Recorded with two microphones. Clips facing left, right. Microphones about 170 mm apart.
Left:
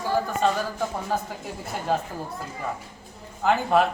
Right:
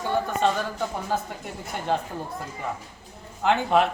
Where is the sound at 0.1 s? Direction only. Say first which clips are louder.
Even; centre (ahead or behind).